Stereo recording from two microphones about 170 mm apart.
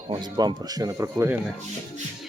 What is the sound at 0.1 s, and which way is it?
Speech, 25° right (ahead or behind).